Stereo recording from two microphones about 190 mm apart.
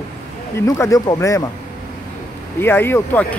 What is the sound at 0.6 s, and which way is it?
Speech, 15° left (ahead or behind).